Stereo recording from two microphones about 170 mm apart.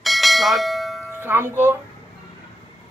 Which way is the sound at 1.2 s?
15° right (ahead or behind).